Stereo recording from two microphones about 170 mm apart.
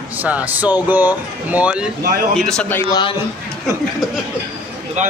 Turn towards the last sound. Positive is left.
turn(degrees=-45)  # may be behind; listen again after turning